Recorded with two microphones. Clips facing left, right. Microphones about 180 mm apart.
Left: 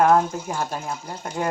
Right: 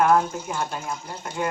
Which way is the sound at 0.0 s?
35° left (ahead or behind).